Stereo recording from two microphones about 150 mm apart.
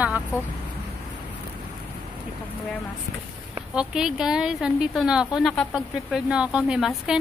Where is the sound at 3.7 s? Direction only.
5° right (ahead or behind).